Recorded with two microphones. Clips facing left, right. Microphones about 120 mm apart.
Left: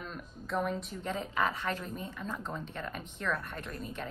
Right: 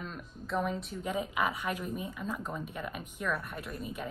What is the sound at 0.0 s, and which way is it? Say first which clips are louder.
A woman's voice: right 1 dB; centre (ahead or behind).